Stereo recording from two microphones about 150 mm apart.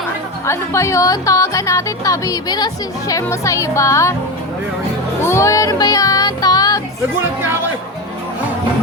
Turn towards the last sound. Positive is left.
turn(degrees=-15)  # may be behind; listen again after turning